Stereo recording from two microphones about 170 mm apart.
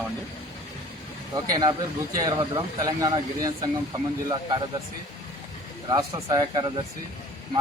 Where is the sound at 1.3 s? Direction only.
25° right (ahead or behind).